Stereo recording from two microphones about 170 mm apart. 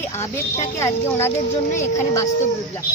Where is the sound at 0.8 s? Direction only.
15° left (ahead or behind).